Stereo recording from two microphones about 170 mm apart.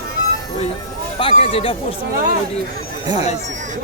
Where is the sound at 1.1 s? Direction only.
35° left (ahead or behind).